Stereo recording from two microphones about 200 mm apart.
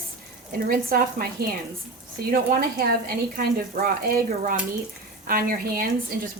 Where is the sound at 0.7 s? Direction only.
45° right (ahead or behind).